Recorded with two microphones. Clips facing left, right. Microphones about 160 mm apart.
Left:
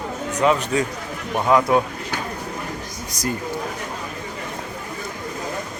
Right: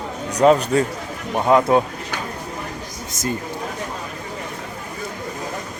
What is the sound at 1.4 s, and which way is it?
Speech, 25° right (ahead or behind).